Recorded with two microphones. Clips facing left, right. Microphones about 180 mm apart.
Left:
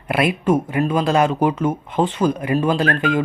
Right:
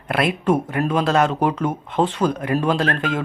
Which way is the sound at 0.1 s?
5° left (ahead or behind).